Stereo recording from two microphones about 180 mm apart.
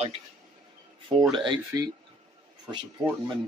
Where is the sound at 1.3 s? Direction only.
25° right (ahead or behind).